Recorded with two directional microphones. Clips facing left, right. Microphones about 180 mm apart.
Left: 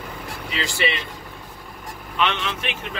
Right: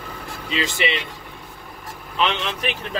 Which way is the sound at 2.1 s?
35° right (ahead or behind).